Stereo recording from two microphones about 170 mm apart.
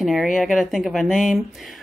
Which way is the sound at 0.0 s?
Centre (ahead or behind).